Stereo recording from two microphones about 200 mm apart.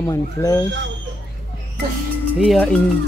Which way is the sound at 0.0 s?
15° left (ahead or behind).